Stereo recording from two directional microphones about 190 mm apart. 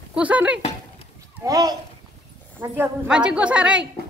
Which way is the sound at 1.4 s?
20° right (ahead or behind).